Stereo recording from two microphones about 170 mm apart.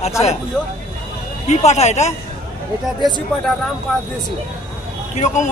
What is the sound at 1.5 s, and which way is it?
Speech, 40° left (ahead or behind).